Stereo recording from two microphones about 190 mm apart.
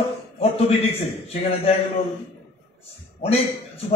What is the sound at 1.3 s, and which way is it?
Speech, 35° left (ahead or behind).